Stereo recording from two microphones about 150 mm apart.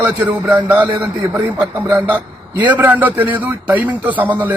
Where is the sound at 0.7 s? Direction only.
20° right (ahead or behind).